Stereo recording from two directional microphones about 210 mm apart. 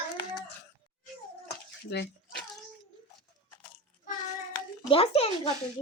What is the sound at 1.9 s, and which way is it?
Speech, 55° left (ahead or behind).